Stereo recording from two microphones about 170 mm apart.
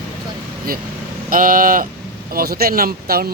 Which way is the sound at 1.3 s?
55° right (ahead or behind).